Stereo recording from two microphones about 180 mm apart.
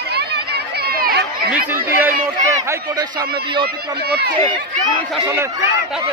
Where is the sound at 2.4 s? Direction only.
20° right (ahead or behind).